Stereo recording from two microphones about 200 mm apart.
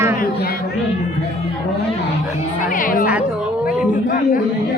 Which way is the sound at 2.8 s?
45° left (ahead or behind).